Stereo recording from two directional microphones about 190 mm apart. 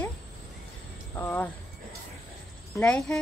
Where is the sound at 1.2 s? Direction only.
10° left (ahead or behind).